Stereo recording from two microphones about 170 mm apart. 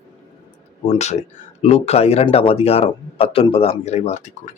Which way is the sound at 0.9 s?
40° left (ahead or behind).